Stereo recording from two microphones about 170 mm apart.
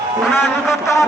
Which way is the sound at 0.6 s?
15° left (ahead or behind).